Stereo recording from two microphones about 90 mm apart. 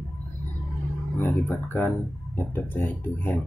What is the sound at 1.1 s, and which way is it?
Speech, 25° left (ahead or behind).